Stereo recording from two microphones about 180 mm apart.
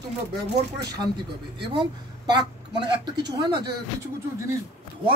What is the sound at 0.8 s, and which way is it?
Speech, 25° right (ahead or behind).